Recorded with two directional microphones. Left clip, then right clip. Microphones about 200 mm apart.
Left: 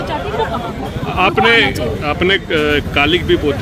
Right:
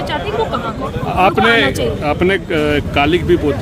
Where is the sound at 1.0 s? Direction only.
35° right (ahead or behind).